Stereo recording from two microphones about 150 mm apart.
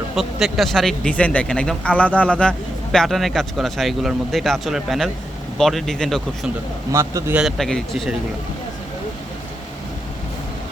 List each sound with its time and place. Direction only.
0.2 s speech: centre (ahead or behind)
6.9 s a man's voice: 20° right (ahead or behind)
7.3 s speech: centre (ahead or behind)